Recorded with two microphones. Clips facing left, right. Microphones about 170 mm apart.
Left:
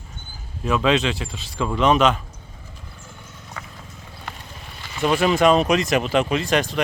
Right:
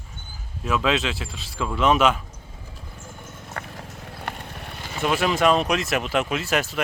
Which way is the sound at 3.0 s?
50° right (ahead or behind).